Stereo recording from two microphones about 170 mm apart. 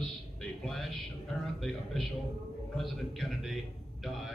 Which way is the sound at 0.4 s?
Centre (ahead or behind).